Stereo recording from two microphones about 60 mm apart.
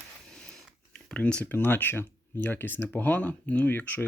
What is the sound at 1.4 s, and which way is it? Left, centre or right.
Speech, left.